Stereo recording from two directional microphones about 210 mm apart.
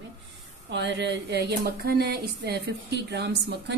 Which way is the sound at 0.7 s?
55° right (ahead or behind).